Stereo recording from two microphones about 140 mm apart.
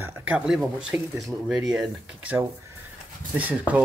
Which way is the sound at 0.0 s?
15° right (ahead or behind).